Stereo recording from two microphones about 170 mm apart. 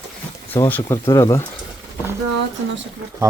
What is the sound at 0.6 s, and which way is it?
Speech, 15° left (ahead or behind).